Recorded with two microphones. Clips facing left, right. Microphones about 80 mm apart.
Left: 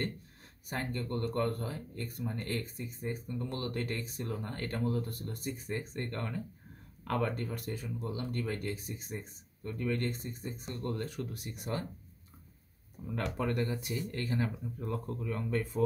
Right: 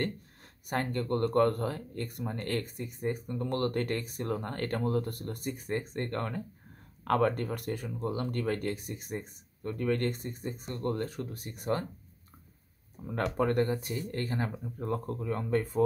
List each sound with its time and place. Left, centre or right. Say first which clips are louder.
0.7 s speech: right 6 dB; right
13.0 s speech: right 5 dB; right